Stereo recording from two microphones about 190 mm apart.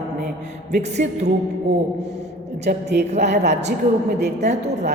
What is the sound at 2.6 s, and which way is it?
Speech, 60° right (ahead or behind).